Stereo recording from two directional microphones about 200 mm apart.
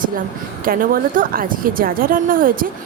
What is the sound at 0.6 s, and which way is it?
A woman's voice, 45° right (ahead or behind).